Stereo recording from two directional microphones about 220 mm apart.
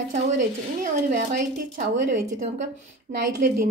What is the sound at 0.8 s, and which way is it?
Speech, 35° right (ahead or behind).